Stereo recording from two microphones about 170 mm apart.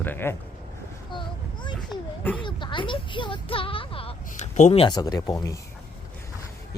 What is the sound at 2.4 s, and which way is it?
Speech, 30° left (ahead or behind).